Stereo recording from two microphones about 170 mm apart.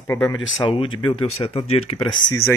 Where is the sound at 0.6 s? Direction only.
30° left (ahead or behind).